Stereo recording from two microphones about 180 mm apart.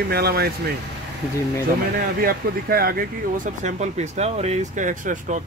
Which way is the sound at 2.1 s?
55° right (ahead or behind).